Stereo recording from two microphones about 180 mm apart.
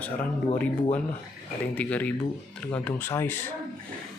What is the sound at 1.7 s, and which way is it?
Speech, 10° left (ahead or behind).